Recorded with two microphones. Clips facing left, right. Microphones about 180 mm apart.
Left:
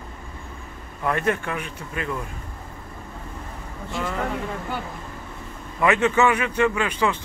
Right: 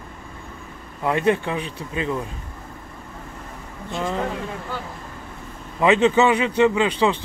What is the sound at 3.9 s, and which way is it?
Speech, 25° right (ahead or behind).